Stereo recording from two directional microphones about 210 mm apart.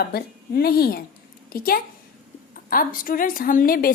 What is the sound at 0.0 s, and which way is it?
A woman's voice, 50° left (ahead or behind).